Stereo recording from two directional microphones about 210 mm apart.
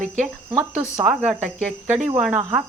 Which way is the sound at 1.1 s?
5° right (ahead or behind).